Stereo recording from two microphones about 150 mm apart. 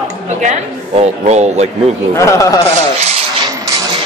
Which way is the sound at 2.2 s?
20° left (ahead or behind).